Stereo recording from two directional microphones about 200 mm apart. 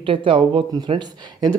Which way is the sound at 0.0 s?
25° right (ahead or behind).